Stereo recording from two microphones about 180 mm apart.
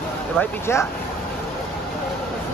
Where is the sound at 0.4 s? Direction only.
15° left (ahead or behind).